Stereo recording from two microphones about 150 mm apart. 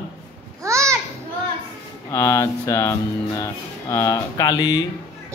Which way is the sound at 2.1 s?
20° left (ahead or behind).